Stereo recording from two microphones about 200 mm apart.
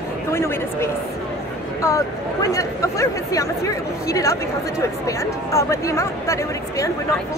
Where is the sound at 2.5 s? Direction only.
15° left (ahead or behind).